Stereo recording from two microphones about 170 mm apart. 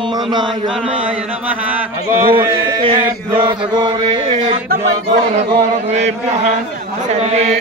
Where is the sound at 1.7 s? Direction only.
15° right (ahead or behind).